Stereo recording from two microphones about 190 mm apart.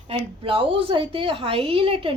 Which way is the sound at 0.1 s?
30° right (ahead or behind).